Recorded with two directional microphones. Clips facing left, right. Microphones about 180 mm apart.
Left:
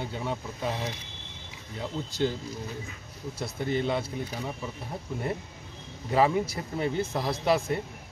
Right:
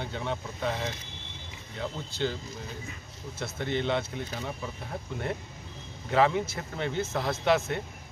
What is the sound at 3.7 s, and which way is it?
Speech, 5° left (ahead or behind).